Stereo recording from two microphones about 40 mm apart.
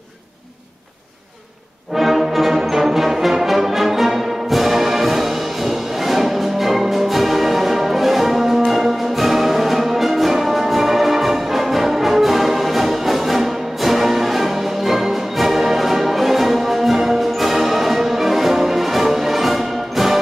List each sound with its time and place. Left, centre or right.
2.0 s music: centre